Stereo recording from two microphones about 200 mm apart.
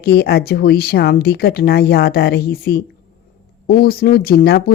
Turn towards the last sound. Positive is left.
turn(degrees=50)  # may be behind; listen again after turning